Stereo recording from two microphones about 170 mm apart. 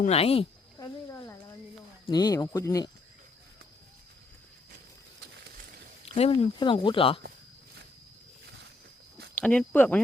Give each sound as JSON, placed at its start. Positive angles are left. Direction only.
{"t": 0.0, "sound": "speech", "side_deg": 35}
{"t": 0.8, "sound": "a sound", "side_deg": 20}
{"t": 2.0, "sound": "speech", "side_deg": 25}
{"t": 6.1, "sound": "speech", "side_deg": 35}
{"t": 9.3, "sound": "speech", "side_deg": 5}